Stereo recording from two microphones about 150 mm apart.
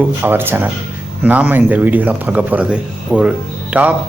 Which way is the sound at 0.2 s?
15° right (ahead or behind).